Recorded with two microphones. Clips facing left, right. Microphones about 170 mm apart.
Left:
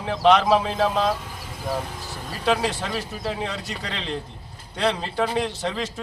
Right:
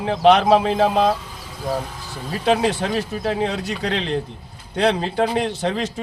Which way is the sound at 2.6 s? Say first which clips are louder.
Right 6 dB; 60° right (ahead or behind).